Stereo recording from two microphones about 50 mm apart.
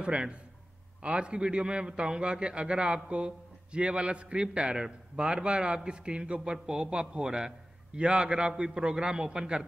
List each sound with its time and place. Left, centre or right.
0.0 s a man's voice: right